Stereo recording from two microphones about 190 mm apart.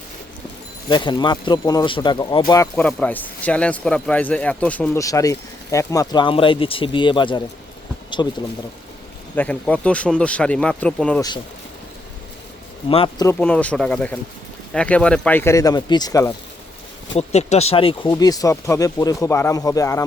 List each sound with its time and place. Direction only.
0.9 s speech: 25° left (ahead or behind)
2.5 s speech: 15° left (ahead or behind)
5.0 s speech: 15° left (ahead or behind)
9.3 s speech: 5° left (ahead or behind)
12.9 s speech: 30° left (ahead or behind)
13.2 s speech: 10° left (ahead or behind)
17.2 s speech: 35° left (ahead or behind); by 20.1 s 15° left (ahead or behind)